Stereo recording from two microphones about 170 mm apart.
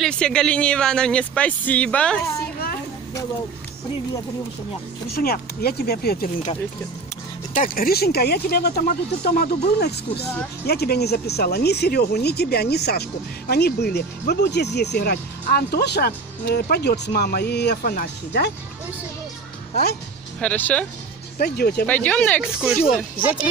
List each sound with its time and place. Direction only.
0.0 s speech: 5° left (ahead or behind)
5.1 s speech: 65° left (ahead or behind)
7.5 s speech: 55° left (ahead or behind); by 18.5 s 75° left (ahead or behind)
20.3 s speech: 10° left (ahead or behind)
21.4 s speech: 65° left (ahead or behind)
21.8 s speech: 10° left (ahead or behind)
22.4 s speech: 5° right (ahead or behind)